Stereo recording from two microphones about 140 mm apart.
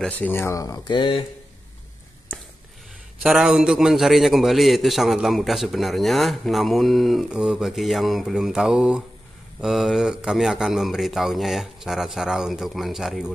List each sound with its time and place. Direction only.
0.0 s speech: 15° left (ahead or behind); by 1.2 s 35° left (ahead or behind)
3.2 s a man's voice: 5° right (ahead or behind)